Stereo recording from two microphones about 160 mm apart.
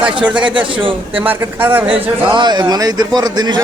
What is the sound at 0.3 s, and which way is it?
Speech, 10° right (ahead or behind).